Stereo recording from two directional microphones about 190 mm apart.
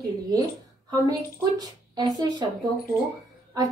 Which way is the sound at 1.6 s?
20° right (ahead or behind).